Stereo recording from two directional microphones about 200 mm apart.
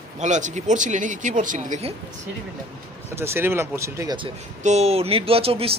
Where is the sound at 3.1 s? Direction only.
10° right (ahead or behind).